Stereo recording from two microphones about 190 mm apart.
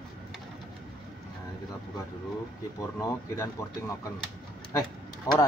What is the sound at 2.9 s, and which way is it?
Speech, 15° left (ahead or behind).